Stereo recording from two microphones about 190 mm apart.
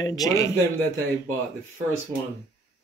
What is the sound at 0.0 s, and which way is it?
Speech, 20° left (ahead or behind).